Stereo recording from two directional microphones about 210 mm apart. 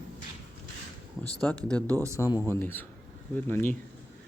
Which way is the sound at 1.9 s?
15° right (ahead or behind).